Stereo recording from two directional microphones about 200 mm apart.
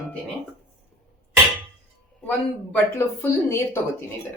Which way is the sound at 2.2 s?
10° left (ahead or behind).